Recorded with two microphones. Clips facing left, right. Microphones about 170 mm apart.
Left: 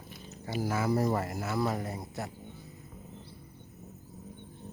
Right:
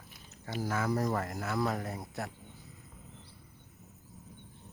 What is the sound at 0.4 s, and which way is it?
Speech, 10° left (ahead or behind).